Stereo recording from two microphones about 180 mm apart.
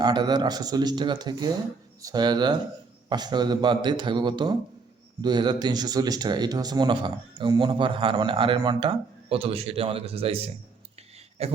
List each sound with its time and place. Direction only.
0.0 s speech: 25° right (ahead or behind)
11.4 s speech: 35° right (ahead or behind)